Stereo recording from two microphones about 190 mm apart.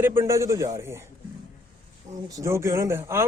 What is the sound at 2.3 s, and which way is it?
Speech, 15° right (ahead or behind).